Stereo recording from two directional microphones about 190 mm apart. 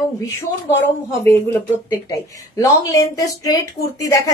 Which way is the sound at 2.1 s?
15° left (ahead or behind).